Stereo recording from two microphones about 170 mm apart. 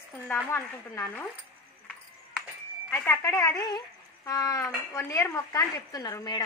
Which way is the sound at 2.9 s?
15° left (ahead or behind).